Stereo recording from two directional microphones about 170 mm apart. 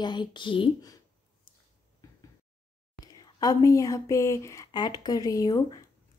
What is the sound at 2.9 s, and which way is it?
Speech, 20° left (ahead or behind).